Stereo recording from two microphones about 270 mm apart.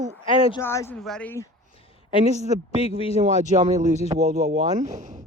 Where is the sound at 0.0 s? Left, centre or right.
Right.